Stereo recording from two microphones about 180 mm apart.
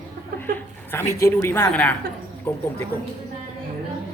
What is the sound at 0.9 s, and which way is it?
A woman's voice, 15° left (ahead or behind).